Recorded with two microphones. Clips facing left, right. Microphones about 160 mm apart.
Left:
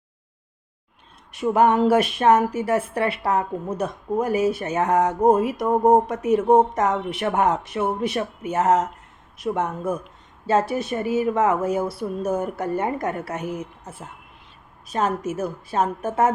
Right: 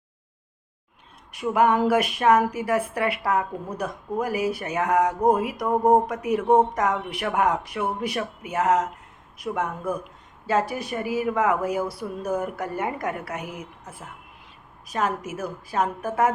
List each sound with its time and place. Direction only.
1.3 s a woman's voice: 30° left (ahead or behind)